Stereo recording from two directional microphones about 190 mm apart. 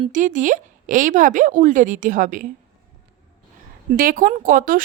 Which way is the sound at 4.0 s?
45° right (ahead or behind).